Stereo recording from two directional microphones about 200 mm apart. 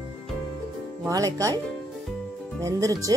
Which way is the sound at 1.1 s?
15° right (ahead or behind).